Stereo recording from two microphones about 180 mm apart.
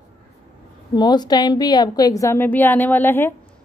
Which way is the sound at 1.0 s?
25° left (ahead or behind).